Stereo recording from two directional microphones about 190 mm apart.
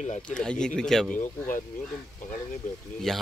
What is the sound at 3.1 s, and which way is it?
Speech, centre (ahead or behind).